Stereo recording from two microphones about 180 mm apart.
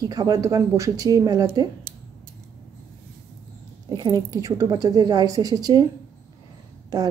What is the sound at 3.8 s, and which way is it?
A woman's voice, 20° right (ahead or behind).